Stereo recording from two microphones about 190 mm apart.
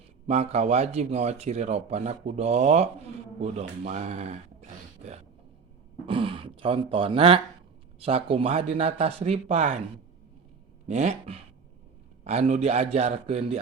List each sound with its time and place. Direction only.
0.3 s speech: 35° right (ahead or behind)
10.8 s speech: 35° right (ahead or behind)